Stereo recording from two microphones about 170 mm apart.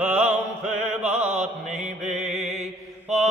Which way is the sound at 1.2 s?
40° right (ahead or behind).